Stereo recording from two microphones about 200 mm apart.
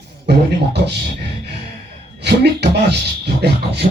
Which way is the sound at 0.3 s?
55° right (ahead or behind).